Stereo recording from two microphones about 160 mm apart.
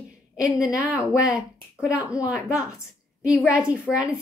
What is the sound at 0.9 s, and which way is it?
Speech, 20° left (ahead or behind).